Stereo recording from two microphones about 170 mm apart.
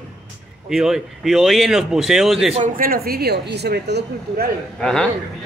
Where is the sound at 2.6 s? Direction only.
55° right (ahead or behind); by 4.4 s 75° right (ahead or behind).